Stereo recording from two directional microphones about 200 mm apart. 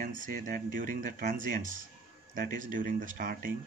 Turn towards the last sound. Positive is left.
turn(degrees=-45)  # may be behind; listen again after turning